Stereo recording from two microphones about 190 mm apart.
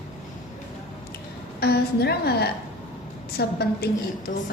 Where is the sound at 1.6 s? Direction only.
55° left (ahead or behind).